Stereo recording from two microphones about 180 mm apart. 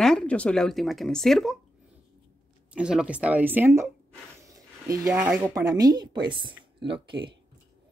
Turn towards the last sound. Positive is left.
turn(degrees=-25)  # may be behind; listen again after turning